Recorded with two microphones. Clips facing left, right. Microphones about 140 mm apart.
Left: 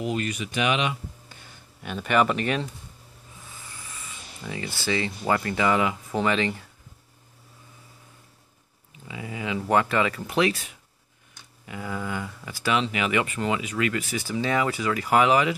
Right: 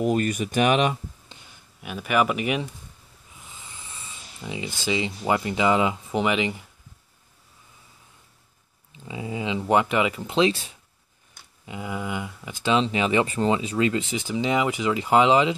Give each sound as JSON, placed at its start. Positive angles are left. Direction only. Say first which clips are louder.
{"t": 0.0, "sound": "speech", "louder": "right 5 dB", "side_deg": -45}
{"t": 1.8, "sound": "speech", "louder": "even", "side_deg": -5}
{"t": 8.9, "sound": "speech", "louder": "right 4 dB", "side_deg": -25}